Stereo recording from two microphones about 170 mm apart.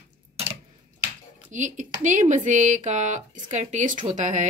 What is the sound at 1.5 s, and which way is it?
Speech, 45° right (ahead or behind).